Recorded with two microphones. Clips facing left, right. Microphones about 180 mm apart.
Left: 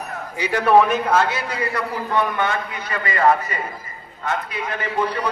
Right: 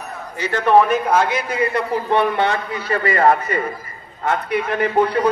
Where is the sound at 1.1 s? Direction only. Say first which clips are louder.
Right 2 dB; 20° right (ahead or behind); by 3.3 s 35° right (ahead or behind).